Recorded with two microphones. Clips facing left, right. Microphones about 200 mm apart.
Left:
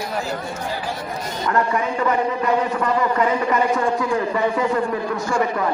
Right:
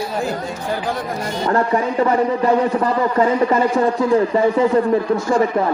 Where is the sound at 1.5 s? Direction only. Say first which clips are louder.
Right 3 dB; 30° right (ahead or behind).